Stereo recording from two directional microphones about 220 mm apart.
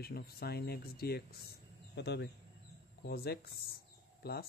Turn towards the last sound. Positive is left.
turn(degrees=45)  # may be behind; listen again after turning